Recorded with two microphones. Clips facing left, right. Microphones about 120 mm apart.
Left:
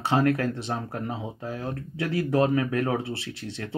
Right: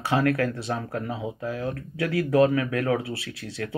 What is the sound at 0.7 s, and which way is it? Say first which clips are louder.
Speech: right 1 dB; 25° left (ahead or behind).